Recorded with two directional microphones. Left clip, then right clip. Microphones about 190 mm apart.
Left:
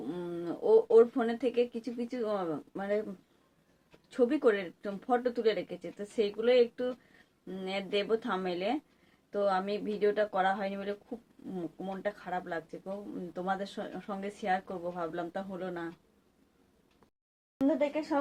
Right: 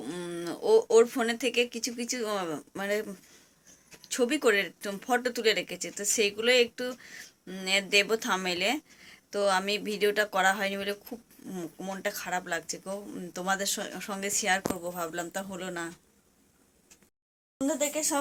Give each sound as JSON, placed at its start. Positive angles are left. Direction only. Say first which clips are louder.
{"t": 0.0, "sound": "speech", "louder": "right 2 dB", "side_deg": -10}
{"t": 17.7, "sound": "speech", "louder": "right 1 dB", "side_deg": -10}